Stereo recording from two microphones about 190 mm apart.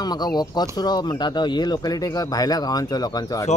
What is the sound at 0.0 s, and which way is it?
Speech, 20° left (ahead or behind).